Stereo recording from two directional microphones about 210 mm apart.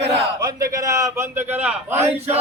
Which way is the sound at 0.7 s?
15° right (ahead or behind).